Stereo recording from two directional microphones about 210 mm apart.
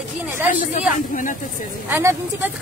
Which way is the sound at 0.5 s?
40° left (ahead or behind).